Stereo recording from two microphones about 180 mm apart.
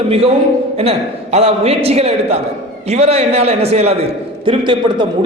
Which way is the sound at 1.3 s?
35° right (ahead or behind).